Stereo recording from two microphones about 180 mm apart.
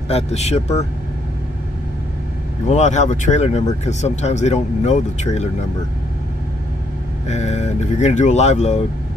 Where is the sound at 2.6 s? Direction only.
40° left (ahead or behind).